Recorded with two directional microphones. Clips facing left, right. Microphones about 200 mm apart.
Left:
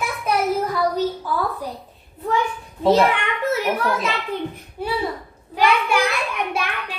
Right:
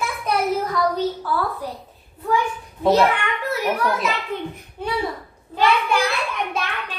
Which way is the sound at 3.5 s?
25° left (ahead or behind).